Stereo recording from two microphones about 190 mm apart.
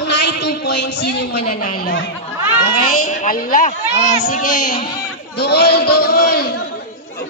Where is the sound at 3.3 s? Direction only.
45° left (ahead or behind).